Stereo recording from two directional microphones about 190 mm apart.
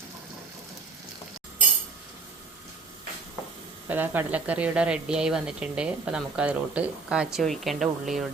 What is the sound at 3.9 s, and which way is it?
A woman's voice, 10° right (ahead or behind).